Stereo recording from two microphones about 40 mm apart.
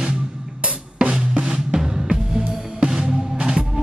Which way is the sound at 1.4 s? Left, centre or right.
Centre.